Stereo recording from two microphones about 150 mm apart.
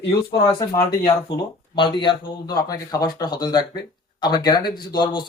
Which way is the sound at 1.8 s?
35° left (ahead or behind).